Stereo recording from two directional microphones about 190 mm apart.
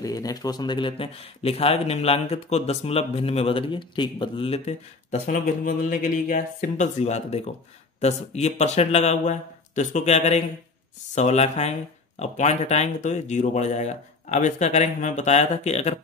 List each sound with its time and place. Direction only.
0.0 s a man's voice: 20° left (ahead or behind)
5.2 s a man's voice: 45° left (ahead or behind)